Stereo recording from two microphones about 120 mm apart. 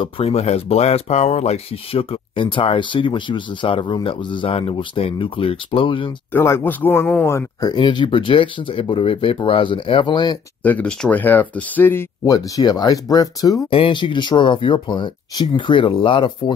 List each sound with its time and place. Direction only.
0.0 s speech: 55° left (ahead or behind)
6.3 s speech: 20° left (ahead or behind)
7.7 s speech: 40° left (ahead or behind)
10.6 s speech: 10° left (ahead or behind)
12.3 s speech: 30° left (ahead or behind)
13.7 s speech: 50° left (ahead or behind)